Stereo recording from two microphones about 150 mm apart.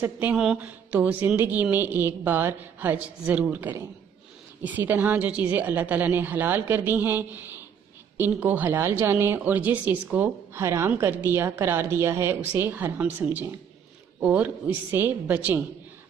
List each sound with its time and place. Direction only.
0.0 s a woman's voice: 10° right (ahead or behind)